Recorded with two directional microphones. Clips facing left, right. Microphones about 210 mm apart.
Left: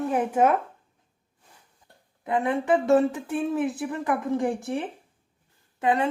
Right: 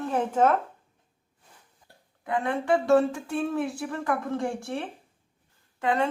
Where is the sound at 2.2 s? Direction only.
20° left (ahead or behind).